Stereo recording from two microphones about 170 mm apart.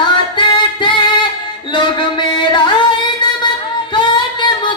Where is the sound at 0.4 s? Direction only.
30° left (ahead or behind).